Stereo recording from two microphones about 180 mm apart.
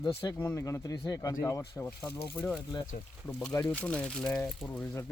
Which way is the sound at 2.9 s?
50° left (ahead or behind).